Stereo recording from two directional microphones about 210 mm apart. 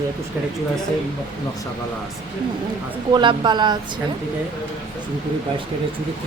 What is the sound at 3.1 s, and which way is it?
Speech, 20° right (ahead or behind).